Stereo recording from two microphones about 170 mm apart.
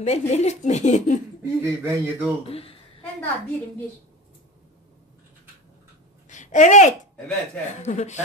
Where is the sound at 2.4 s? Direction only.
35° left (ahead or behind).